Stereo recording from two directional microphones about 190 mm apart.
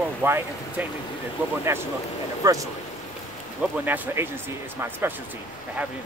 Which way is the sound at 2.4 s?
20° right (ahead or behind).